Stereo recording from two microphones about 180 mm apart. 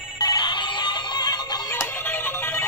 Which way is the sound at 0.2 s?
25° left (ahead or behind).